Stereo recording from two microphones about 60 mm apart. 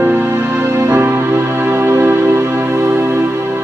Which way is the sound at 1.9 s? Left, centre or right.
Right.